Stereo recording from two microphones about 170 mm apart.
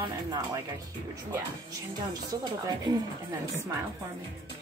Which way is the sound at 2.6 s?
25° right (ahead or behind).